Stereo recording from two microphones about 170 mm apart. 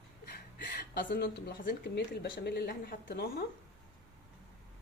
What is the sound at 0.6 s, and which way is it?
Speech, 75° left (ahead or behind).